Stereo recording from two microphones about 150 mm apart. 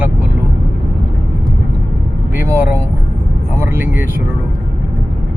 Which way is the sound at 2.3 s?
15° right (ahead or behind).